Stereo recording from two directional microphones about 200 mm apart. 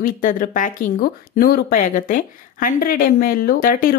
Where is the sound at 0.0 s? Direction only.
40° left (ahead or behind).